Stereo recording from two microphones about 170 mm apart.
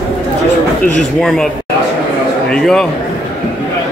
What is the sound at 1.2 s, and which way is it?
Speech, 5° left (ahead or behind).